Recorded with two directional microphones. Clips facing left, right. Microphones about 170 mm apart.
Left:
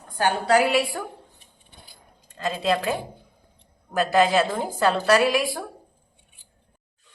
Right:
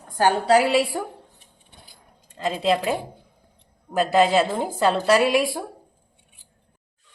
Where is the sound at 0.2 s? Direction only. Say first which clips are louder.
Right 4 dB; 40° right (ahead or behind).